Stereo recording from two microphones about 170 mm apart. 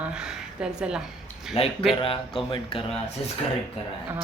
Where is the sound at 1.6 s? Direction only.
40° left (ahead or behind).